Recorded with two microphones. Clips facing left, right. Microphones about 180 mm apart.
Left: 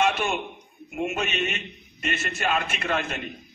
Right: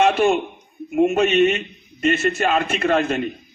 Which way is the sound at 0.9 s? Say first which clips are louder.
Right 12 dB; 45° right (ahead or behind).